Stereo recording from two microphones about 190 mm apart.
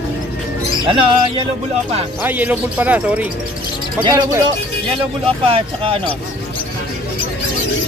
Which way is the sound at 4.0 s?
25° right (ahead or behind).